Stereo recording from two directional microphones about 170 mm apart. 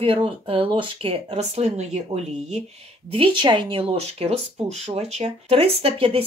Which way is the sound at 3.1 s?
30° right (ahead or behind).